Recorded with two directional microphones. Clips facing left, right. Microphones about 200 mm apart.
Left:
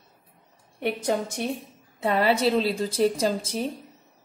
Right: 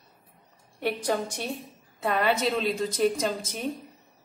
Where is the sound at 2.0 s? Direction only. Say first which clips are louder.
Left 3 dB; 30° left (ahead or behind).